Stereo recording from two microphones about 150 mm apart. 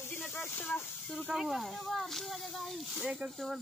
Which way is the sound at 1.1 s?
5° right (ahead or behind).